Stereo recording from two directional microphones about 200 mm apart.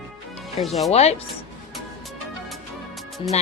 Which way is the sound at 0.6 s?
Centre (ahead or behind).